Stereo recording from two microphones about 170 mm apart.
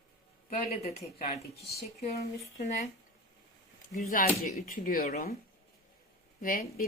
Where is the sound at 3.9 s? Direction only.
50° left (ahead or behind).